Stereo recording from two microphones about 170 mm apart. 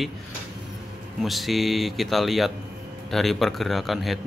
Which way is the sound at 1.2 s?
Centre (ahead or behind).